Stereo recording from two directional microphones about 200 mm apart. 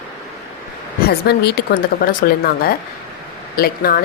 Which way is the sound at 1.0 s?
55° left (ahead or behind).